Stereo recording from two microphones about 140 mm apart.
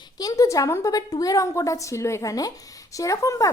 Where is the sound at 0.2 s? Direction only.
25° left (ahead or behind).